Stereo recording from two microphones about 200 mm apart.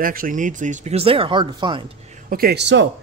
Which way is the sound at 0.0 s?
45° right (ahead or behind).